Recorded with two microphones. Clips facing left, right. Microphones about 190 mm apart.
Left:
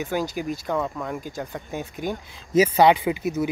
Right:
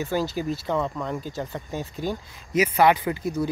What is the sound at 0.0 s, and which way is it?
Speech, 15° left (ahead or behind).